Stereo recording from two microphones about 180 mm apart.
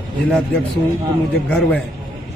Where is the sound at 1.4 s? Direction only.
5° left (ahead or behind).